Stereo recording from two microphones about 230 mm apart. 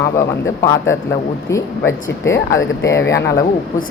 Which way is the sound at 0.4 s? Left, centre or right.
Centre.